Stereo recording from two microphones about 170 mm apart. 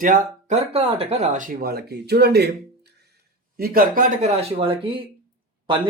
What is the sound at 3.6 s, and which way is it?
Speech, 60° right (ahead or behind).